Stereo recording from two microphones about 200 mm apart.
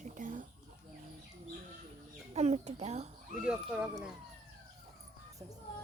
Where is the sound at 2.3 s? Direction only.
35° right (ahead or behind).